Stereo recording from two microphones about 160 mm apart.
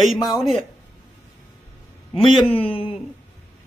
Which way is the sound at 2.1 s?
35° left (ahead or behind).